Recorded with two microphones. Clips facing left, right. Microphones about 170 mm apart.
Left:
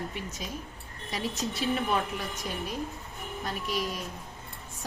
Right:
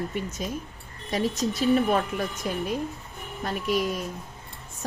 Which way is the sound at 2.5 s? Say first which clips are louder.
Right 6 dB; 55° right (ahead or behind).